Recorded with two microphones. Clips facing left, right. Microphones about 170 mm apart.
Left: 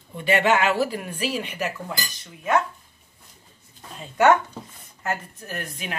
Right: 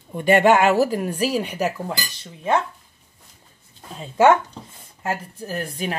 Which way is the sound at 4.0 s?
30° right (ahead or behind).